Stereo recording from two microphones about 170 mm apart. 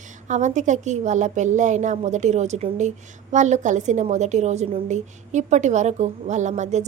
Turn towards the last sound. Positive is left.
turn(degrees=-45)  # may be behind; listen again after turning